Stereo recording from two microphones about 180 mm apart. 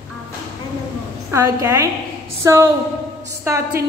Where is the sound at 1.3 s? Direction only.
15° right (ahead or behind).